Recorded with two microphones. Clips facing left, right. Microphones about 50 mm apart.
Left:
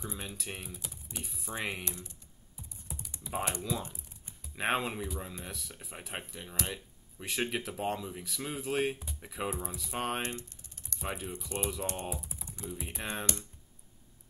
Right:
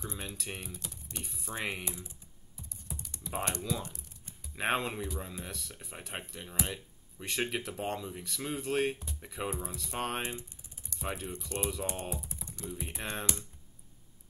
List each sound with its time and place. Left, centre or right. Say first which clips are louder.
0.0 s speech: even; centre
1.9 s speech: right 1 dB; centre
2.9 s typing: left 1 dB; centre
4.6 s speech: even; centre
10.2 s typing: left 1 dB; centre
11.0 s speech: even; centre
11.8 s speech: even; centre
12.1 s speech: even; centre